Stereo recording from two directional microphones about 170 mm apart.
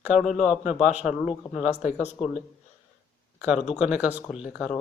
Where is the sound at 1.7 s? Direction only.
40° left (ahead or behind).